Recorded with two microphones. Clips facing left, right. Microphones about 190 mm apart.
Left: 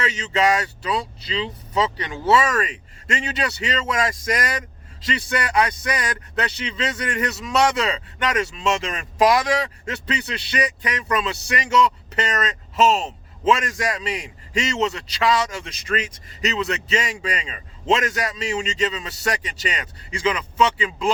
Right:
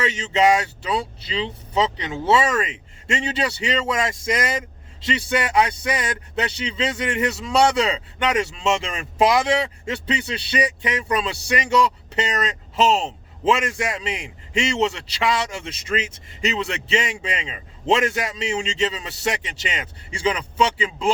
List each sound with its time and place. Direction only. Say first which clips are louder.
0.0 s speech: right 2 dB; 30° right (ahead or behind)